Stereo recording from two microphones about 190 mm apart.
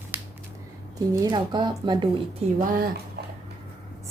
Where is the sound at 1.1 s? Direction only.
20° right (ahead or behind).